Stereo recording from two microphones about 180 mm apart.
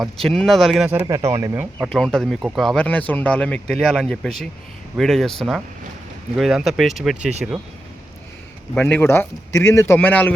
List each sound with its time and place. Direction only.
0.0 s speech: centre (ahead or behind)
1.0 s speech: 20° right (ahead or behind)
1.9 s speech: 5° left (ahead or behind)
8.7 s speech: 10° left (ahead or behind)